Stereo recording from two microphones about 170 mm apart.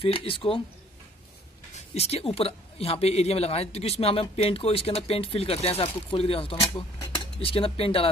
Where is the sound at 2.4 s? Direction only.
35° left (ahead or behind).